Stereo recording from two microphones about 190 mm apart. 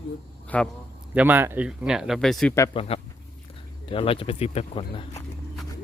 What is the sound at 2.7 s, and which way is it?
Speech, 30° left (ahead or behind).